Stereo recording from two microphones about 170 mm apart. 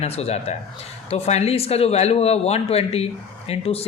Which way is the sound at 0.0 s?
35° left (ahead or behind).